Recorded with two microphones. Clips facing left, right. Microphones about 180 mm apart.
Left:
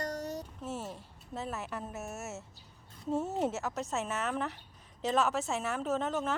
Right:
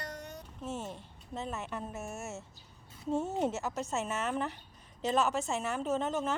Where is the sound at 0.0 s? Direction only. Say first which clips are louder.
Left 7 dB; 40° left (ahead or behind).